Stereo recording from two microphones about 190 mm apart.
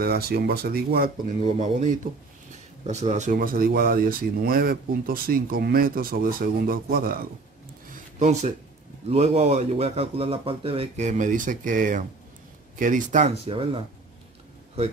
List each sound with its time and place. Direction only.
0.0 s speech: 55° right (ahead or behind)
1.6 s a man's voice: 40° right (ahead or behind)
7.9 s a sound: 35° right (ahead or behind)
9.1 s a man's voice: 35° right (ahead or behind)